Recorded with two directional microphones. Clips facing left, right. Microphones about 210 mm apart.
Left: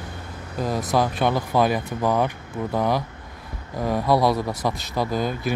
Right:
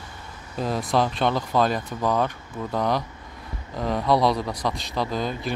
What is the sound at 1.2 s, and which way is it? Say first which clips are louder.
A man's voice: left 2 dB; 5° left (ahead or behind).